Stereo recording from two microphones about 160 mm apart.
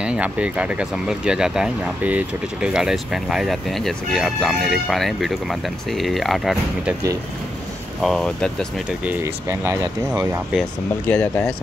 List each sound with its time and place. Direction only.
0.0 s speech: 5° right (ahead or behind)
8.0 s speech: 5° left (ahead or behind)
9.2 s speech: 15° right (ahead or behind)
11.1 s speech: 10° left (ahead or behind)